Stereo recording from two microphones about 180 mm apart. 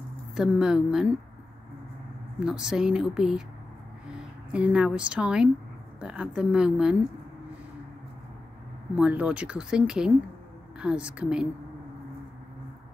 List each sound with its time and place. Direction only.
0.3 s speech: 5° right (ahead or behind)
2.4 s speech: 5° right (ahead or behind)
8.9 s speech: 5° right (ahead or behind)